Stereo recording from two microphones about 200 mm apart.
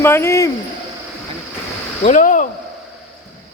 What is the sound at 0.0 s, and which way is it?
Speech, 10° left (ahead or behind).